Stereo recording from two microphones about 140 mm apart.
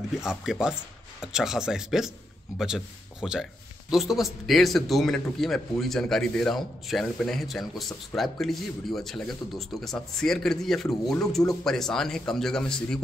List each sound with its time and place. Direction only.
0.2 s speech: 5° right (ahead or behind)